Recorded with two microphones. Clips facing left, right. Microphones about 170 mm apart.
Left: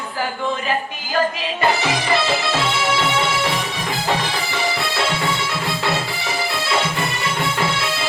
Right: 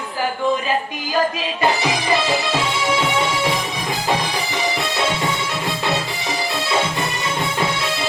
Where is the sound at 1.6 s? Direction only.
15° right (ahead or behind).